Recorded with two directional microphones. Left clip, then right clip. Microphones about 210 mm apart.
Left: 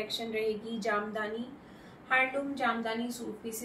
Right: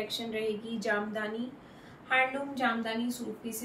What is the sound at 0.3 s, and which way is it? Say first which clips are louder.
A woman's voice: left 1 dB; 10° right (ahead or behind).